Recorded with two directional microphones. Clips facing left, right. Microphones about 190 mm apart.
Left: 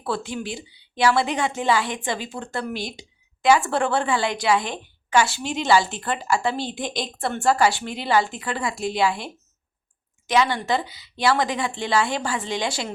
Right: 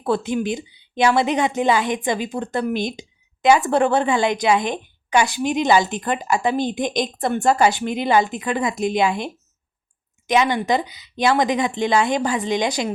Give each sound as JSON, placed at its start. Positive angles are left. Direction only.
{"t": 0.0, "sound": "a woman's voice", "side_deg": -20}